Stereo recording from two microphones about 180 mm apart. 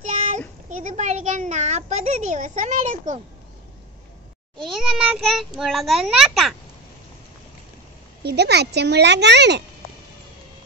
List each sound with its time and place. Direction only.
0.0 s child singing: 40° right (ahead or behind)
0.7 s a child's voice: 45° right (ahead or behind)
4.7 s a child's voice: centre (ahead or behind)
8.2 s a child's voice: 65° right (ahead or behind)